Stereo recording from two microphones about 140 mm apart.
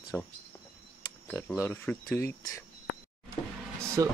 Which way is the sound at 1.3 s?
10° left (ahead or behind).